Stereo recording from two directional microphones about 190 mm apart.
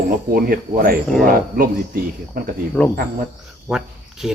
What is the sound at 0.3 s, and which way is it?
Speech, 50° right (ahead or behind).